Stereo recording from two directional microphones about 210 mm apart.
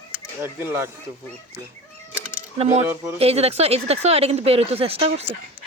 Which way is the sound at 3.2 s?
30° right (ahead or behind).